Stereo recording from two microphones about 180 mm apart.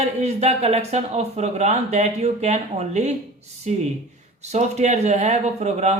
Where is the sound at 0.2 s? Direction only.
35° right (ahead or behind).